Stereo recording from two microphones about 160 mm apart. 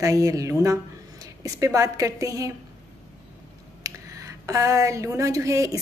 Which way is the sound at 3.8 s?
20° right (ahead or behind).